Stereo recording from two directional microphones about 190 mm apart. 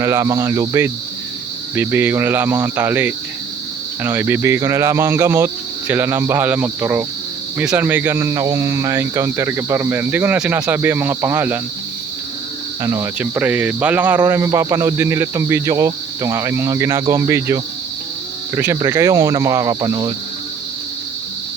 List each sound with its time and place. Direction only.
0.0 s speech: 15° right (ahead or behind)
12.8 s speech: 15° right (ahead or behind)